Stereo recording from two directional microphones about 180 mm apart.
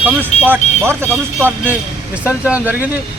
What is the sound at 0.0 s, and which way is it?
Speech, 10° right (ahead or behind).